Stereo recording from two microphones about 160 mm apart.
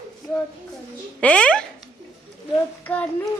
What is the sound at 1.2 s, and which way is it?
Speech, 5° left (ahead or behind).